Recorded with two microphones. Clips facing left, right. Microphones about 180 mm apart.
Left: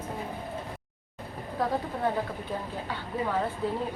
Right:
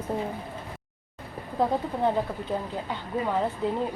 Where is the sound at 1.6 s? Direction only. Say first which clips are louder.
Right 4 dB; 20° right (ahead or behind).